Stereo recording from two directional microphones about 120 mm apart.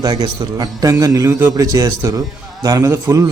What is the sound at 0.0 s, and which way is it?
A man's voice, 35° right (ahead or behind).